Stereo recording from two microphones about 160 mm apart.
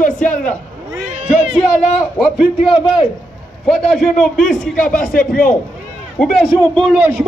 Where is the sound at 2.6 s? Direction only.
35° left (ahead or behind).